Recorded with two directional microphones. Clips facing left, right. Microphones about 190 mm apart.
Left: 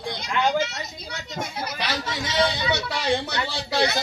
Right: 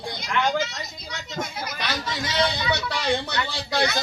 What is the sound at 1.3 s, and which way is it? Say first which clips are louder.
Speech: even; 30° left (ahead or behind).